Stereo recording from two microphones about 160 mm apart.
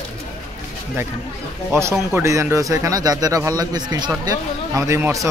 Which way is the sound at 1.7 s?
15° right (ahead or behind).